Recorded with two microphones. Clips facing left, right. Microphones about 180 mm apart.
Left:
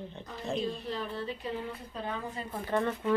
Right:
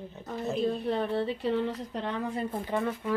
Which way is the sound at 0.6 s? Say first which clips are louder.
Right 6 dB; 60° right (ahead or behind).